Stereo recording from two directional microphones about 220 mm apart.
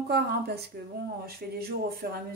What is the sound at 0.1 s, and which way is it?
A woman's voice, 45° right (ahead or behind).